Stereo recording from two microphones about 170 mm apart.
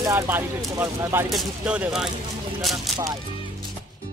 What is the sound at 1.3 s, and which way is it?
Speech, 5° right (ahead or behind).